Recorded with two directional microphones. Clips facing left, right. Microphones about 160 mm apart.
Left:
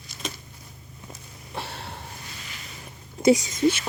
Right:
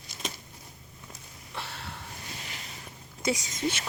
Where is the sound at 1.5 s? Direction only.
30° left (ahead or behind).